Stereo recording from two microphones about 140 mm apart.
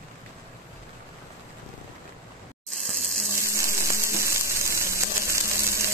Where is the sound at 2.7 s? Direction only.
Centre (ahead or behind).